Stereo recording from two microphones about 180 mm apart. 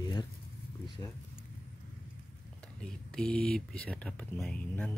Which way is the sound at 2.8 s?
5° left (ahead or behind).